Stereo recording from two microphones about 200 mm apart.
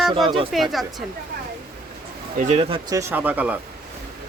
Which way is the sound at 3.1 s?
10° right (ahead or behind).